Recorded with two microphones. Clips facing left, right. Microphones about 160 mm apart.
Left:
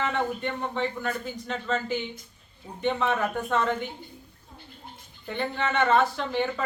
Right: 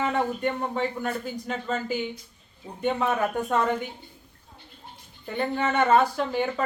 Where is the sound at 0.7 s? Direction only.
40° right (ahead or behind).